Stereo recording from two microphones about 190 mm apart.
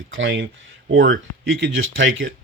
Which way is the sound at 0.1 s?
90° right.